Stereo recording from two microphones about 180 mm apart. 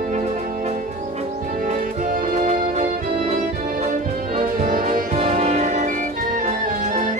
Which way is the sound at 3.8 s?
45° right (ahead or behind).